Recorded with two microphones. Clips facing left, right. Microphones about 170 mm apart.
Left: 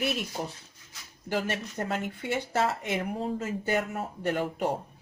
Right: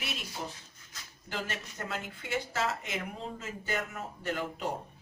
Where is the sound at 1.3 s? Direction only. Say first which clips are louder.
Left 8 dB; 55° left (ahead or behind).